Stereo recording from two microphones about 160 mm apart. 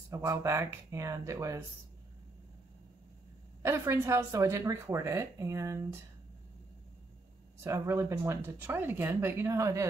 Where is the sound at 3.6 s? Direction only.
20° right (ahead or behind).